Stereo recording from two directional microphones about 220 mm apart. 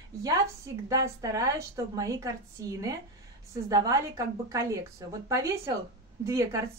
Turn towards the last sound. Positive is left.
turn(degrees=-15)  # may be behind; listen again after turning